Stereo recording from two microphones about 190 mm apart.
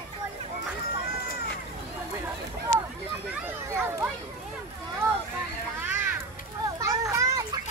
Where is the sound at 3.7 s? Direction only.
15° right (ahead or behind).